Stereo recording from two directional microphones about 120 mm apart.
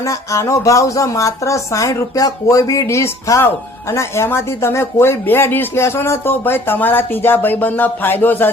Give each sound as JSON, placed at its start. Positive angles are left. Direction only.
{"t": 0.0, "sound": "speech", "side_deg": 25}